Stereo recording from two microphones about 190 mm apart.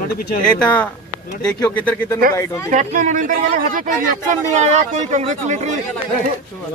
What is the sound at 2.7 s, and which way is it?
Speech, 40° right (ahead or behind).